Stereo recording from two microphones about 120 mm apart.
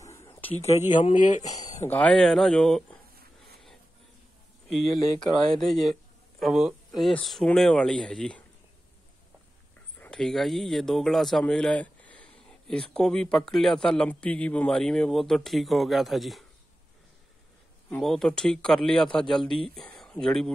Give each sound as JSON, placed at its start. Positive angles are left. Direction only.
{"t": 0.0, "sound": "a sound", "side_deg": 25}
{"t": 0.5, "sound": "speech", "side_deg": 60}
{"t": 1.1, "sound": "speech", "side_deg": 85}
{"t": 1.5, "sound": "a sound", "side_deg": 30}
{"t": 1.9, "sound": "a man's voice", "side_deg": 10}
{"t": 4.9, "sound": "speech", "side_deg": 30}
{"t": 5.6, "sound": "a man's voice", "side_deg": 0}
{"t": 9.9, "sound": "a man's voice", "side_deg": 10}
{"t": 17.8, "sound": "a man's voice", "side_deg": 5}
{"t": 19.4, "sound": "speech", "side_deg": 45}
{"t": 19.7, "sound": "speech", "side_deg": 5}